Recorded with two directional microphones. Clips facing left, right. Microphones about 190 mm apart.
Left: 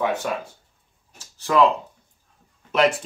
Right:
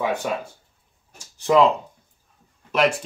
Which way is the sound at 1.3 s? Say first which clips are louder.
Right 3 dB; 20° right (ahead or behind).